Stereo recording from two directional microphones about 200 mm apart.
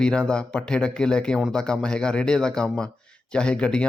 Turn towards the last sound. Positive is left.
turn(degrees=5)  # may be behind; listen again after turning